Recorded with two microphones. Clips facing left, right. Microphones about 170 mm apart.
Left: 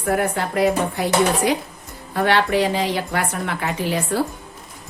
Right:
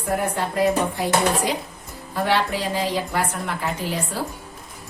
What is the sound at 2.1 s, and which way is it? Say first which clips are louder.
A woman's voice: left 4 dB; 70° left (ahead or behind).